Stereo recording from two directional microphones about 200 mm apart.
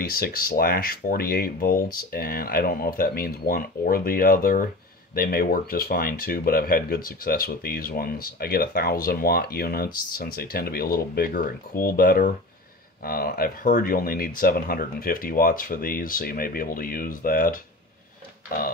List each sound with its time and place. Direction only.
0.0 s speech: 50° left (ahead or behind)